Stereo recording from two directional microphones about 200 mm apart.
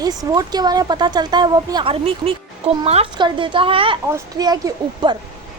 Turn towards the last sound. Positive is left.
turn(degrees=-20)  # may be behind; listen again after turning